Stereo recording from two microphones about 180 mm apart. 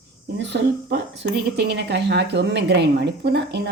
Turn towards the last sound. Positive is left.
turn(degrees=-70)  # may be behind; listen again after turning